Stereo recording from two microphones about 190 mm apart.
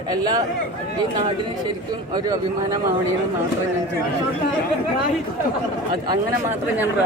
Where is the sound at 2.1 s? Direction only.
20° right (ahead or behind).